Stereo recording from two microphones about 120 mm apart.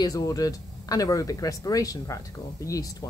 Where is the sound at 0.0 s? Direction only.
30° left (ahead or behind).